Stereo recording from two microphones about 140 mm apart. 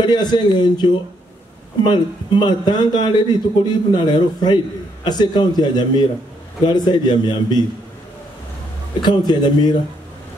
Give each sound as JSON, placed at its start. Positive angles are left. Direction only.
{"t": 0.0, "sound": "a man's voice", "side_deg": 30}
{"t": 9.0, "sound": "a man's voice", "side_deg": 30}